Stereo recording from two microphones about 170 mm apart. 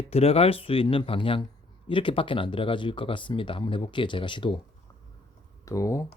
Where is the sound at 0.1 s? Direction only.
35° left (ahead or behind).